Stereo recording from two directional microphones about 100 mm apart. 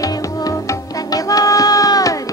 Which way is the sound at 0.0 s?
35° left (ahead or behind).